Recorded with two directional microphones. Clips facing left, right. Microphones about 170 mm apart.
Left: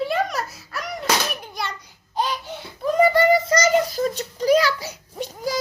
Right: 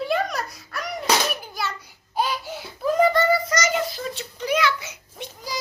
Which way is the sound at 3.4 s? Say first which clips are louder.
Left 5 dB; 35° left (ahead or behind).